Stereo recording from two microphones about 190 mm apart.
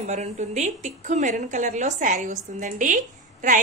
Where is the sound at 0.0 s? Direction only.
40° right (ahead or behind).